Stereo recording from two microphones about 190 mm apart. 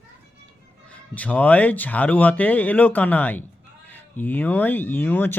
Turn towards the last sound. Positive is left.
turn(degrees=10)  # may be behind; listen again after turning